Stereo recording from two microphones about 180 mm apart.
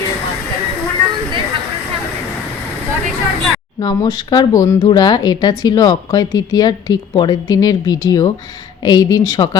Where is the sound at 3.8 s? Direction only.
20° left (ahead or behind).